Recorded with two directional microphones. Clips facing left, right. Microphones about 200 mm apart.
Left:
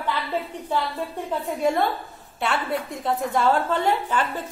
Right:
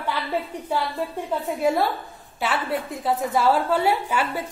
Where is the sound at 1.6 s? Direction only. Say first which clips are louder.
Even; 5° right (ahead or behind).